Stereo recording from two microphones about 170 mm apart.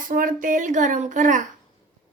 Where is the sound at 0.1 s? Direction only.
55° right (ahead or behind).